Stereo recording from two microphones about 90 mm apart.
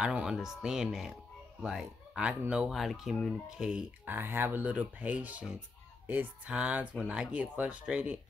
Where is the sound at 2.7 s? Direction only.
Centre (ahead or behind).